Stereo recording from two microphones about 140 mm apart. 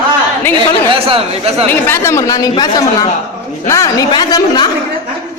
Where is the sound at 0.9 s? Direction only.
40° right (ahead or behind).